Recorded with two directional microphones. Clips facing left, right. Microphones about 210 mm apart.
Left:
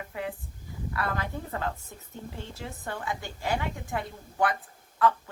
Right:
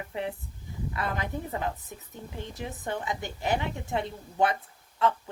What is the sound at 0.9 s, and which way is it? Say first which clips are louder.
A woman's voice: even; 20° right (ahead or behind).